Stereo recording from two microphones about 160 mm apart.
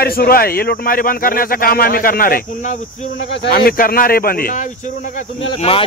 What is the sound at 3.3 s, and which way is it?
Speech, 75° left (ahead or behind).